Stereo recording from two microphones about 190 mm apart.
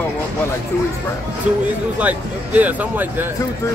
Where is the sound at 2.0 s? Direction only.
10° right (ahead or behind).